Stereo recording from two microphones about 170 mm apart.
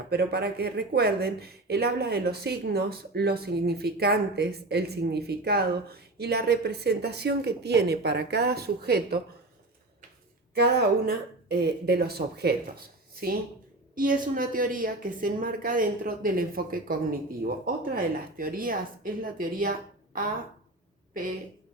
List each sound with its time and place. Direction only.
0.1 s speech: 70° right (ahead or behind)
10.5 s speech: 70° right (ahead or behind)
13.9 s a woman's voice: 55° right (ahead or behind)